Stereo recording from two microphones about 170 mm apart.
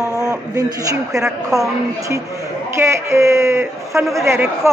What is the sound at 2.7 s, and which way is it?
Speech, 15° right (ahead or behind).